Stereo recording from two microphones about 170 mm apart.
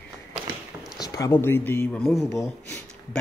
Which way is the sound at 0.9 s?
20° left (ahead or behind).